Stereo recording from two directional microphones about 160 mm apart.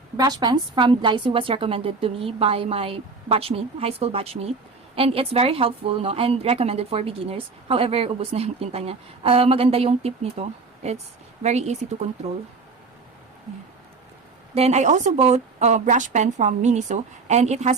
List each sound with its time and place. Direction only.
0.2 s a woman's voice: 25° right (ahead or behind); by 11.8 s 45° right (ahead or behind)
14.5 s a woman's voice: 45° right (ahead or behind)